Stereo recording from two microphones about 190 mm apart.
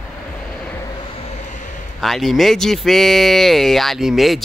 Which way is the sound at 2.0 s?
Centre (ahead or behind).